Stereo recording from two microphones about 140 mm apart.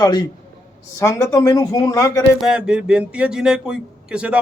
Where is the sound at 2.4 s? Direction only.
5° right (ahead or behind).